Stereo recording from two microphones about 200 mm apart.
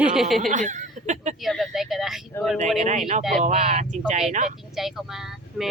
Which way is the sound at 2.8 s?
35° right (ahead or behind).